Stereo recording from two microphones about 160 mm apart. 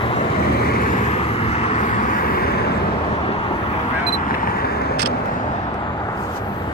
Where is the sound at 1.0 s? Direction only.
40° left (ahead or behind); by 2.7 s 75° left (ahead or behind).